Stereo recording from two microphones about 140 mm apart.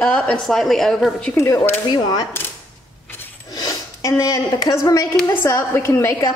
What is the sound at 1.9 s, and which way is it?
Speech, 30° left (ahead or behind).